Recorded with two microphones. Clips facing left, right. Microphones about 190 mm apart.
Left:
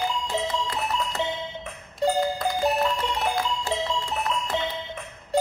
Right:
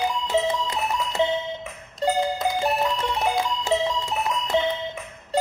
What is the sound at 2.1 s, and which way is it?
Music, 20° right (ahead or behind).